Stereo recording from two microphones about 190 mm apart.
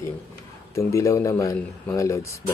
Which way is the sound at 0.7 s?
15° left (ahead or behind).